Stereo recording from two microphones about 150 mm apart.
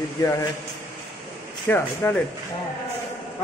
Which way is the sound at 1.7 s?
15° left (ahead or behind).